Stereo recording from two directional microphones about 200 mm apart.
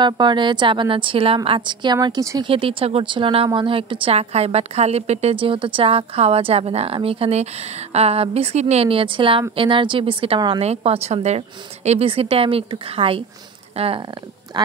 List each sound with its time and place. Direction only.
0.0 s a woman's voice: 20° right (ahead or behind)